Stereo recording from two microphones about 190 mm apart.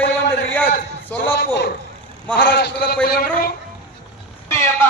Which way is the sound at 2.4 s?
60° left (ahead or behind).